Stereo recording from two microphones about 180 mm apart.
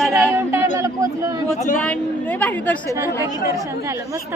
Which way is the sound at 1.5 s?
45° left (ahead or behind).